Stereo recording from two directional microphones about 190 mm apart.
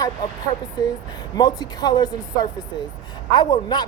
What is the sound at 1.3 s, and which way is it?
Speech, 20° left (ahead or behind).